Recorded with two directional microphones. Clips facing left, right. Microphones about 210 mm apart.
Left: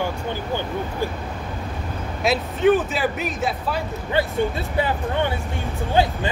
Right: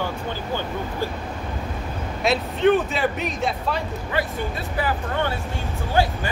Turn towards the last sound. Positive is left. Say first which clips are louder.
# left 2 dB
turn(degrees=20)  # may be behind; listen again after turning